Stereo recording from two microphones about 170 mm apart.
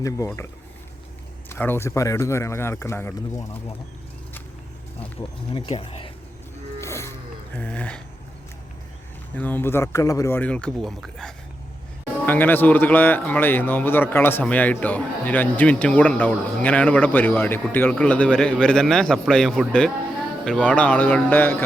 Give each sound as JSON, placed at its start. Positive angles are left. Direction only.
{"t": 1.5, "sound": "speech", "side_deg": 10}
{"t": 5.2, "sound": "speech", "side_deg": 30}
{"t": 6.8, "sound": "roaring cats", "side_deg": 15}
{"t": 7.5, "sound": "speech", "side_deg": 10}
{"t": 9.3, "sound": "speech", "side_deg": 10}